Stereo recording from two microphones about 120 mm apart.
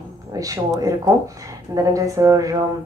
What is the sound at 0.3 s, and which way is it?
Speech, 30° right (ahead or behind).